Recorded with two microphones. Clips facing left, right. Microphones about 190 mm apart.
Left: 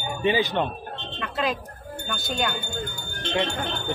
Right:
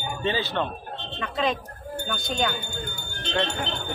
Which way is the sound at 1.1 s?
5° left (ahead or behind).